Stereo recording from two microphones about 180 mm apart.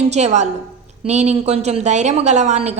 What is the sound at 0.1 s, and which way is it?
A woman's voice, 40° right (ahead or behind).